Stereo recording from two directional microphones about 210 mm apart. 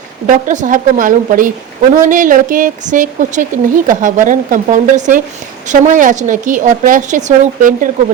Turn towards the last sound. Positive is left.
turn(degrees=-40)  # may be behind; listen again after turning